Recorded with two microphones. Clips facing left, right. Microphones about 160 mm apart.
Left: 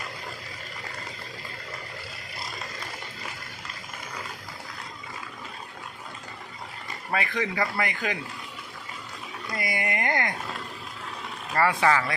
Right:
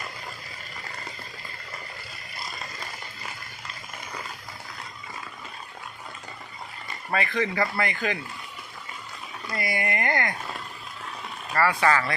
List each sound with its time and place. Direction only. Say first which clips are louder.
7.1 s speech: right 2 dB; 10° left (ahead or behind)
9.6 s speech: right 1 dB; 15° left (ahead or behind)
11.5 s speech: even; 20° left (ahead or behind)